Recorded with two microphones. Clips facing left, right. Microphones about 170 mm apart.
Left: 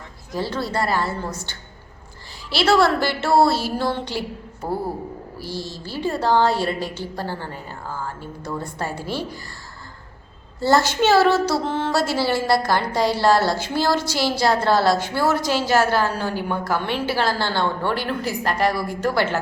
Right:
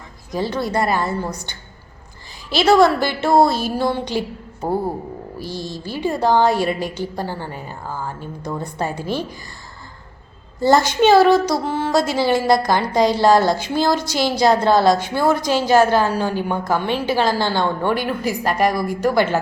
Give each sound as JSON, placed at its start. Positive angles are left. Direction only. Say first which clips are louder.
{"t": 0.3, "sound": "a woman's voice", "louder": "right 3 dB", "side_deg": -15}
{"t": 5.4, "sound": "a woman's voice", "louder": "right 2 dB", "side_deg": -15}
{"t": 10.6, "sound": "a woman's voice", "louder": "right 3 dB", "side_deg": -15}